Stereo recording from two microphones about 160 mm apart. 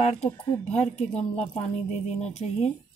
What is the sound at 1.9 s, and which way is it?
Speech, 45° left (ahead or behind).